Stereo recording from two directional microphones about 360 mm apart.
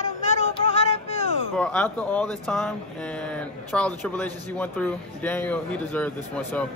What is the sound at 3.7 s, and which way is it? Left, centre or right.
Speech, centre.